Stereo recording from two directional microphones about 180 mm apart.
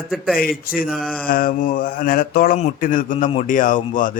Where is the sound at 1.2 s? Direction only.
50° left (ahead or behind).